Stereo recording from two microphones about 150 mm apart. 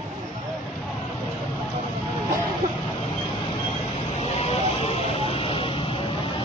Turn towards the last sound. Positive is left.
turn(degrees=35)  # may be behind; listen again after turning